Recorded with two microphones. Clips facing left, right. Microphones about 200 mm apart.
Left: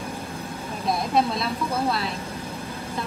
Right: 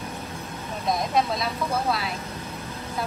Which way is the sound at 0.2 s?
30° left (ahead or behind).